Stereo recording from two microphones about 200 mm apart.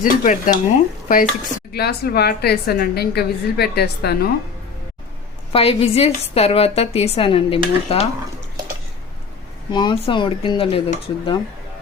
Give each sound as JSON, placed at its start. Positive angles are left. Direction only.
{"t": 0.0, "sound": "a woman's voice", "side_deg": 40}
{"t": 5.5, "sound": "a woman's voice", "side_deg": 30}
{"t": 9.7, "sound": "a woman's voice", "side_deg": 25}